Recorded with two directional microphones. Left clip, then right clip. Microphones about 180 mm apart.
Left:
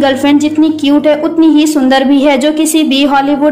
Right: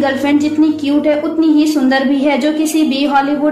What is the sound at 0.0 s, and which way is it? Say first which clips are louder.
A woman's voice: left 4 dB; 25° left (ahead or behind).